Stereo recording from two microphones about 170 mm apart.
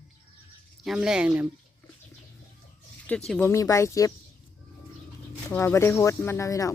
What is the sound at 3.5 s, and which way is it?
Speech, 15° left (ahead or behind).